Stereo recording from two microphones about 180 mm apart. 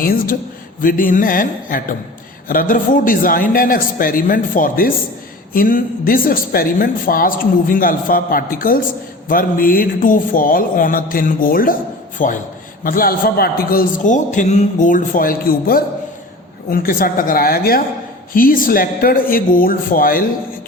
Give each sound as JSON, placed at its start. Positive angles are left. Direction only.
{"t": 0.0, "sound": "a woman's voice", "side_deg": 50}